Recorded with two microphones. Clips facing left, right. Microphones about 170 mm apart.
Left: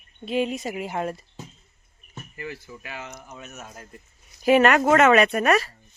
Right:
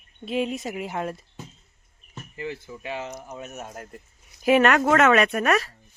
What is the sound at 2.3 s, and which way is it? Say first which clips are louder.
Speech: right 3 dB; 20° right (ahead or behind).